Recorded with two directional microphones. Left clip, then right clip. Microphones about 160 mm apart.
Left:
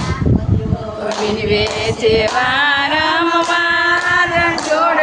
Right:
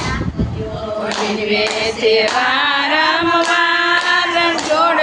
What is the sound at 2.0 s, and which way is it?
Female singing, 5° left (ahead or behind).